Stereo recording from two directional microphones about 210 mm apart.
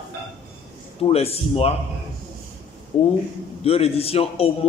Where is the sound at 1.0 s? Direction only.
30° left (ahead or behind).